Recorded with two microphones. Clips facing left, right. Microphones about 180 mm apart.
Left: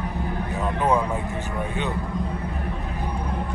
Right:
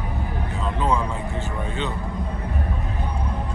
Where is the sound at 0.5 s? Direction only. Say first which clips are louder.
Left 2 dB; 20° left (ahead or behind).